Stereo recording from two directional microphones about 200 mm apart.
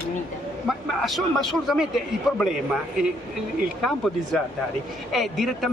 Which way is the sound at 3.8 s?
Centre (ahead or behind).